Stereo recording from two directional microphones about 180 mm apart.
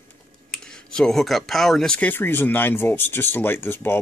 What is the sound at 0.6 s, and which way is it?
Speech, 5° left (ahead or behind).